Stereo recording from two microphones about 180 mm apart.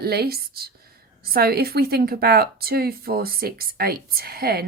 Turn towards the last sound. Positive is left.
turn(degrees=-60)  # may be behind; listen again after turning